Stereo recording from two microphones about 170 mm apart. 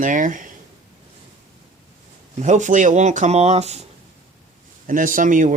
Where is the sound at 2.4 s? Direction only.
45° right (ahead or behind).